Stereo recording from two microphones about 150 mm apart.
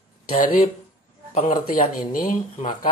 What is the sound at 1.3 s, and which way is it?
Speech, 55° left (ahead or behind).